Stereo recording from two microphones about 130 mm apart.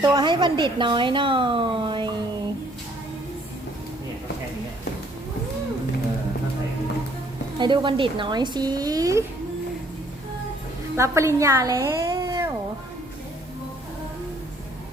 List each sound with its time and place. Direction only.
0.0 s speech: 35° right (ahead or behind)
7.6 s speech: 35° right (ahead or behind)
10.9 s speech: 20° right (ahead or behind)